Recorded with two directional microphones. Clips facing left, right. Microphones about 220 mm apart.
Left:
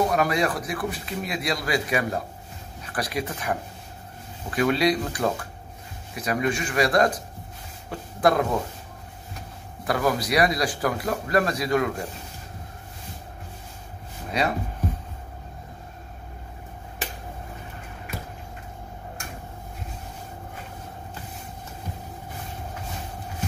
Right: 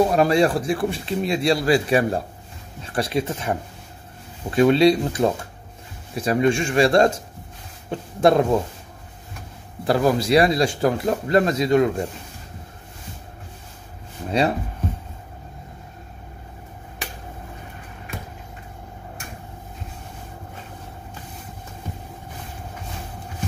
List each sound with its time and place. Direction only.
0.1 s speech: 30° right (ahead or behind)
9.8 s speech: 30° right (ahead or behind)